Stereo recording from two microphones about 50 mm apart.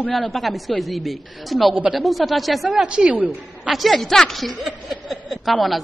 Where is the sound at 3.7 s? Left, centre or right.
Centre.